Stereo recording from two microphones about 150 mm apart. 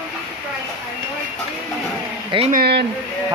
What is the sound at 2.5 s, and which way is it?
Speech, 75° right (ahead or behind).